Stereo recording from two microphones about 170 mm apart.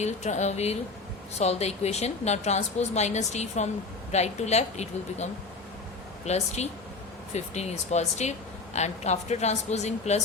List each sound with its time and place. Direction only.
0.0 s a woman's voice: 40° left (ahead or behind)